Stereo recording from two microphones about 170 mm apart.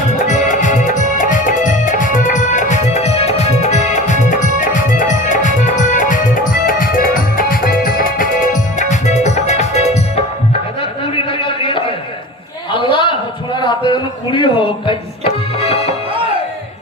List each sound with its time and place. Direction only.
0.1 s music: 45° left (ahead or behind)
10.8 s a sound: 30° left (ahead or behind)
13.6 s music: 25° left (ahead or behind)